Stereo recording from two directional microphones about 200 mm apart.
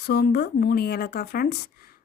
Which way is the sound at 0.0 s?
50° left (ahead or behind).